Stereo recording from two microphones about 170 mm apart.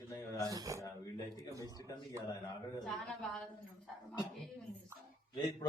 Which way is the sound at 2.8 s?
Centre (ahead or behind).